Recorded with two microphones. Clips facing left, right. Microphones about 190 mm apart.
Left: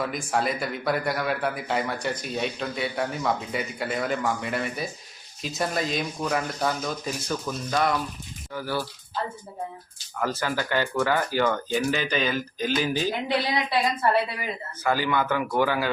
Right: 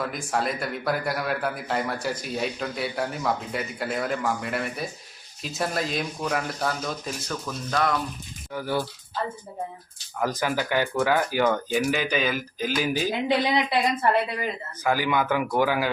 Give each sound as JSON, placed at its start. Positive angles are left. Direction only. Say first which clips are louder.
{"t": 0.0, "sound": "a man's voice", "louder": "left 1 dB", "side_deg": 0}
{"t": 8.5, "sound": "speech", "louder": "right 2 dB", "side_deg": -15}
{"t": 10.2, "sound": "speech", "louder": "right 1 dB", "side_deg": -15}
{"t": 14.8, "sound": "speech", "louder": "right 1 dB", "side_deg": -15}